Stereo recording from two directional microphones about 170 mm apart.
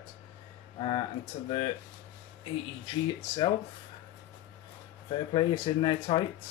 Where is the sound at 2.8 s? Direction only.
25° left (ahead or behind).